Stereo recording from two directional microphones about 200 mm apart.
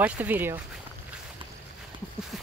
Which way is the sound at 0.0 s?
10° right (ahead or behind).